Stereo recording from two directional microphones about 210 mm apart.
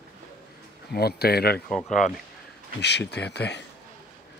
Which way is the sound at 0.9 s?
50° left (ahead or behind).